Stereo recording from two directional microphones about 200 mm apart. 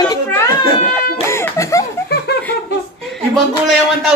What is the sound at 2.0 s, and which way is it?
Laughter, 55° left (ahead or behind).